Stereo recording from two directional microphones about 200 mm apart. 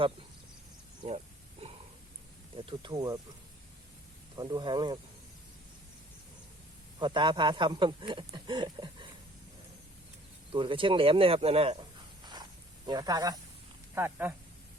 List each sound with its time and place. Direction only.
2.6 s speech: 25° right (ahead or behind)
4.4 s speech: 20° right (ahead or behind)
7.0 s speech: 25° right (ahead or behind)
10.5 s speech: 25° right (ahead or behind)
12.2 s snake: 20° right (ahead or behind)
13.9 s speech: 10° right (ahead or behind)